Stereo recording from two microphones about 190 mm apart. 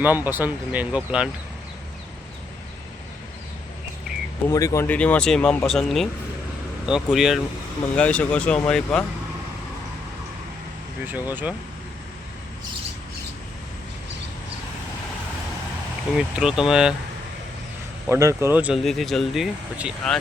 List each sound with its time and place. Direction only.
0.0 s speech: 10° right (ahead or behind)
4.4 s speech: 15° left (ahead or behind)
11.0 s speech: 10° right (ahead or behind)
16.1 s speech: 5° right (ahead or behind)
18.0 s speech: 15° right (ahead or behind)